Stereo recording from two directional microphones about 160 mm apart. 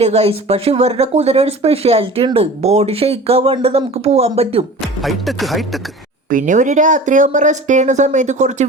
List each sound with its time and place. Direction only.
0.0 s speech: 40° right (ahead or behind)
5.0 s speech: centre (ahead or behind)
6.3 s speech: 55° right (ahead or behind)